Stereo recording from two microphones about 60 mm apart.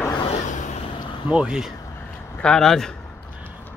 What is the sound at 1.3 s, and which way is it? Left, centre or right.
Speech, centre.